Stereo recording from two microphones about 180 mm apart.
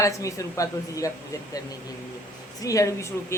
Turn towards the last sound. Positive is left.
turn(degrees=15)  # may be behind; listen again after turning